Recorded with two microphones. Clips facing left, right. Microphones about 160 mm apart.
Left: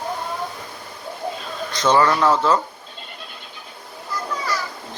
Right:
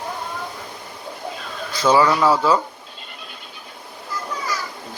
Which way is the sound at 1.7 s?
10° right (ahead or behind).